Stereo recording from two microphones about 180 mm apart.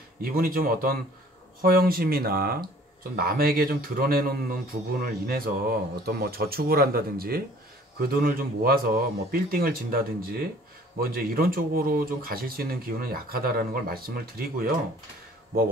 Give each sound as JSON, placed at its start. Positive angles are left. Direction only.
{"t": 0.2, "sound": "speech", "side_deg": -55}